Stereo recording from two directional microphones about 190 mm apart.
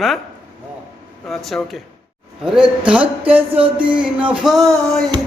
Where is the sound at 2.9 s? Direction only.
10° right (ahead or behind).